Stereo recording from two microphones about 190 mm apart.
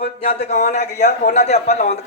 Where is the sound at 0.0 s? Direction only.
40° left (ahead or behind).